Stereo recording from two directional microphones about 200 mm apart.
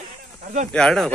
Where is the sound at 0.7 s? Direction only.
5° left (ahead or behind).